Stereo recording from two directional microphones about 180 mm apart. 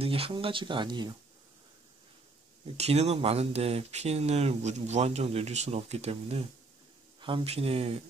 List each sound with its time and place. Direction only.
0.0 s speech: 30° right (ahead or behind)
2.8 s speech: 35° right (ahead or behind)